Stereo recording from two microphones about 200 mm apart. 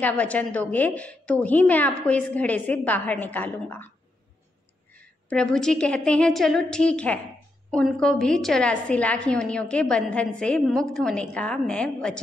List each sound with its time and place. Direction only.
0.0 s a woman's voice: 5° left (ahead or behind)
4.9 s a woman's voice: 5° left (ahead or behind)